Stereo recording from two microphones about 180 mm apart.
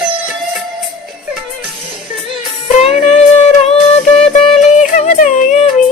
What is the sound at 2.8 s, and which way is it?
Music, 35° left (ahead or behind).